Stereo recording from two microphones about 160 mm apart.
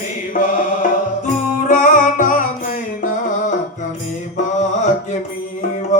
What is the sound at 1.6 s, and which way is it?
Music, 55° left (ahead or behind).